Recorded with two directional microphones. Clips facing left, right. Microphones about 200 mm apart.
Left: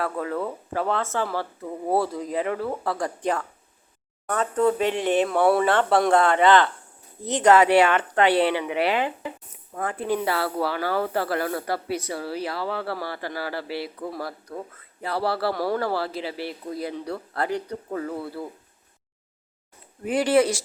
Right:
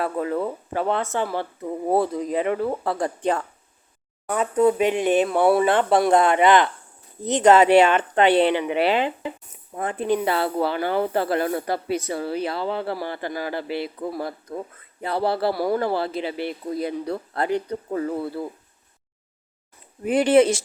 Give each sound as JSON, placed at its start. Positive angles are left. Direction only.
{"t": 0.0, "sound": "speech", "side_deg": -20}
{"t": 4.3, "sound": "speech", "side_deg": -10}
{"t": 20.1, "sound": "speech", "side_deg": -20}